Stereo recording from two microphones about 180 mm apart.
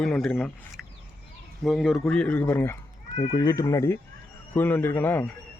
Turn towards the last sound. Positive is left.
turn(degrees=10)  # may be behind; listen again after turning